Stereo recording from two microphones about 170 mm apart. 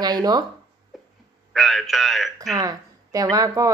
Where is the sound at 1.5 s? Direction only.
Centre (ahead or behind).